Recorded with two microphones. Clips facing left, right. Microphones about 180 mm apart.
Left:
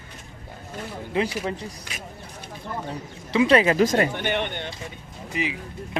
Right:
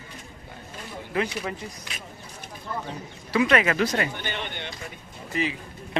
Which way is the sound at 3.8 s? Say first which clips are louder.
Left 5 dB; 45° left (ahead or behind).